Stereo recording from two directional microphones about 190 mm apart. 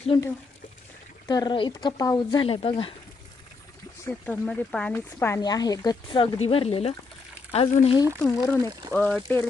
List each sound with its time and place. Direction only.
1.3 s speech: 20° left (ahead or behind)
4.0 s speech: 5° left (ahead or behind); by 7.9 s 35° left (ahead or behind)
8.2 s speech: 10° left (ahead or behind)